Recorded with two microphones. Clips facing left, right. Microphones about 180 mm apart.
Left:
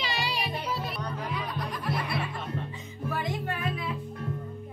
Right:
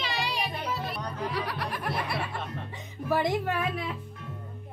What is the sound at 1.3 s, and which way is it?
Music, 75° right (ahead or behind).